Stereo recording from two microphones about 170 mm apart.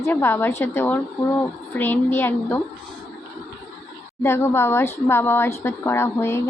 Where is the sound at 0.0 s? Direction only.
15° left (ahead or behind).